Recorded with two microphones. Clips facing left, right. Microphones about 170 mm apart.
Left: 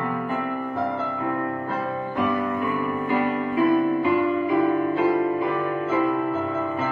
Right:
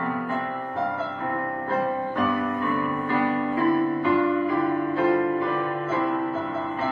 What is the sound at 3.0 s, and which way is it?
Music, 15° left (ahead or behind).